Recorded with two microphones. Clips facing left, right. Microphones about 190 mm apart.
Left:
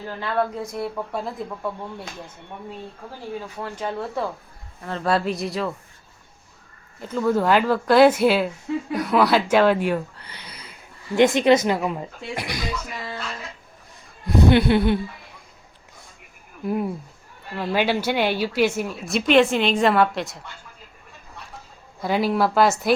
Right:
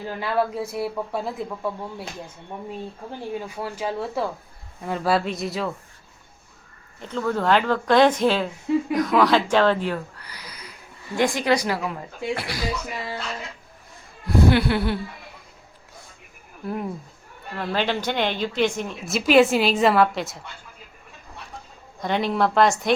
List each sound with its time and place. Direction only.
0.2 s a woman's voice: 5° right (ahead or behind)
3.6 s a woman's voice: 5° right (ahead or behind)
7.0 s speech: 5° left (ahead or behind)
10.2 s a sound: 25° left (ahead or behind)
11.2 s speech: 20° left (ahead or behind)
14.3 s speech: 20° left (ahead or behind)
16.6 s a woman's voice: 10° left (ahead or behind)
22.0 s a woman's voice: 5° left (ahead or behind)